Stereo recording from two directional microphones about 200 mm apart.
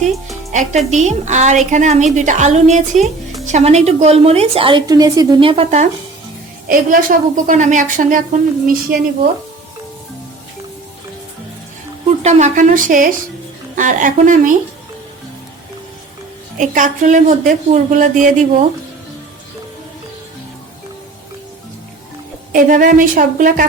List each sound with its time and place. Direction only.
0.5 s a woman's voice: 40° right (ahead or behind)
6.7 s a woman's voice: 45° right (ahead or behind)
12.0 s a woman's voice: 35° right (ahead or behind)
16.6 s a woman's voice: 40° right (ahead or behind)
22.5 s a woman's voice: 45° right (ahead or behind)